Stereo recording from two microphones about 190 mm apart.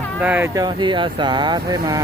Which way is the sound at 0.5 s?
20° right (ahead or behind).